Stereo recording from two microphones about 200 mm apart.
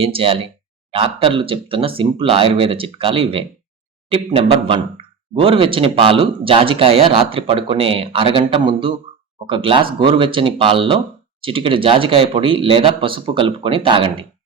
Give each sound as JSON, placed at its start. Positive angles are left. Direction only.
{"t": 0.0, "sound": "speech", "side_deg": -30}